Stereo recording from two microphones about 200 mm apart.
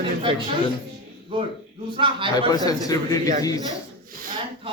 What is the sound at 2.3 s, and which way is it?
Speech, 20° left (ahead or behind).